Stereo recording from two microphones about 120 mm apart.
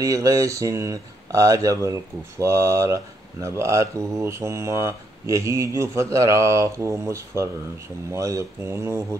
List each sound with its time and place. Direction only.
0.0 s speech: 25° right (ahead or behind)